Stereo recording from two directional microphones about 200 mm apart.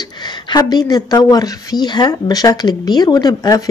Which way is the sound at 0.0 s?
20° left (ahead or behind).